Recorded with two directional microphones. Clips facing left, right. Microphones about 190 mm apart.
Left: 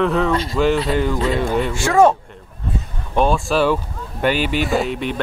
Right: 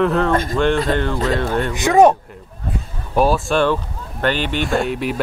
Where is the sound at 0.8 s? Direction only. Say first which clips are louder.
Even; 10° left (ahead or behind).